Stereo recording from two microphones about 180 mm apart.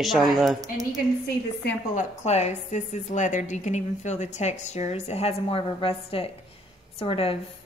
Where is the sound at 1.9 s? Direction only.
40° left (ahead or behind).